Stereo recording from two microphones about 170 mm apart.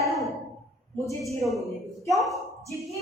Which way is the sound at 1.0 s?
20° left (ahead or behind).